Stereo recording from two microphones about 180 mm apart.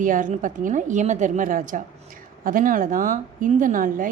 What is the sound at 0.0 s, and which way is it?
A woman's voice, 45° right (ahead or behind).